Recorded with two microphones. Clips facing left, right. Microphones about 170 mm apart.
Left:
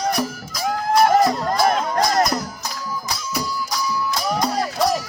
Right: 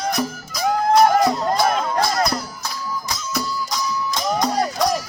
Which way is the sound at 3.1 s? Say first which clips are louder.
Even; 10° left (ahead or behind).